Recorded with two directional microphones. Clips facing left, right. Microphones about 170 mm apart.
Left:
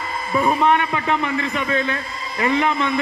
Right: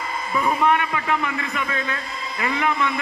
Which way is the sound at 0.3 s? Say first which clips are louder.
Left 3 dB; 25° left (ahead or behind).